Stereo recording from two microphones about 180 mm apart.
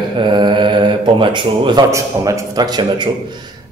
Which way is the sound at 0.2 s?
25° right (ahead or behind).